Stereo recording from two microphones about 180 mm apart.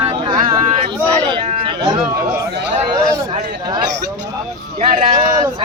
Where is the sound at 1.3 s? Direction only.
25° right (ahead or behind).